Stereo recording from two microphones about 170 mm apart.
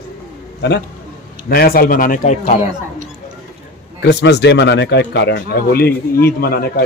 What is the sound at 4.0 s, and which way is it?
Speech, 85° left.